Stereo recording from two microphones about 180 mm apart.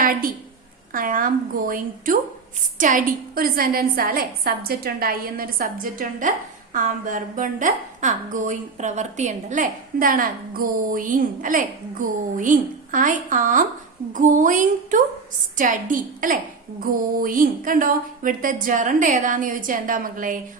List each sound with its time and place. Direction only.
0.0 s a woman's voice: 50° right (ahead or behind)